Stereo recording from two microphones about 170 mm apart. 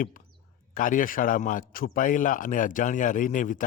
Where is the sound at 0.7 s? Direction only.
50° left (ahead or behind).